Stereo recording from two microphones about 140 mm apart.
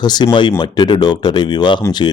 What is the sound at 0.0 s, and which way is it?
Speech, 30° left (ahead or behind).